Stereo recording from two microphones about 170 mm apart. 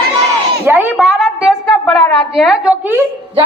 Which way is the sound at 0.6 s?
10° right (ahead or behind).